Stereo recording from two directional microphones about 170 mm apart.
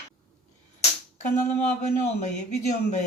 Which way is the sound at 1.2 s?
45° left (ahead or behind).